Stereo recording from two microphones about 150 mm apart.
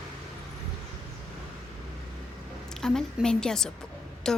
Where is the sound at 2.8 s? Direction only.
5° left (ahead or behind).